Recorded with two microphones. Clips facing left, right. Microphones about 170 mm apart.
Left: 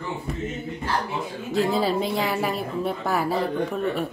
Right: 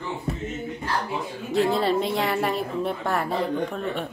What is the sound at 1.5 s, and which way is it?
A woman's voice, centre (ahead or behind).